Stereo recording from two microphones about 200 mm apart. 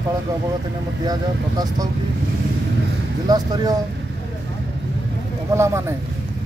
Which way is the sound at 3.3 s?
20° right (ahead or behind).